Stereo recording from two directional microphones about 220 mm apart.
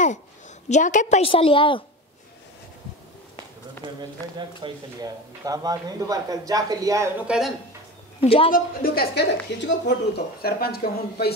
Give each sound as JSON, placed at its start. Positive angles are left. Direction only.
{"t": 0.7, "sound": "a woman's voice", "side_deg": 35}
{"t": 4.4, "sound": "a man's voice", "side_deg": -20}
{"t": 7.2, "sound": "speech", "side_deg": 0}
{"t": 8.2, "sound": "a woman's voice", "side_deg": 25}
{"t": 8.5, "sound": "a woman's voice", "side_deg": 40}